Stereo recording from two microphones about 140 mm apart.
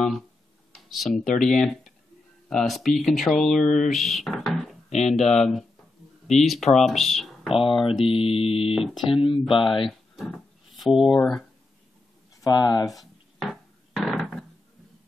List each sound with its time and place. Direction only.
0.7 s speech: centre (ahead or behind)
3.6 s mantra: 65° left (ahead or behind)
3.9 s speech: centre (ahead or behind)
4.8 s a sound: 50° left (ahead or behind)
5.1 s speech: centre (ahead or behind)
8.1 s mantra: 40° left (ahead or behind)
8.7 s speech: centre (ahead or behind)
9.8 s a sound: centre (ahead or behind)
12.4 s speech: 30° left (ahead or behind)
12.8 s a sound: centre (ahead or behind)